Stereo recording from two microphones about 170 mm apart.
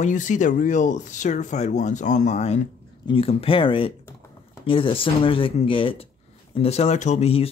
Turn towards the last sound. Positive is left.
turn(degrees=35)  # may be behind; listen again after turning